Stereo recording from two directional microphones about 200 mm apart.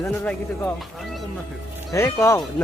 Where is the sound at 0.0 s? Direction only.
10° left (ahead or behind).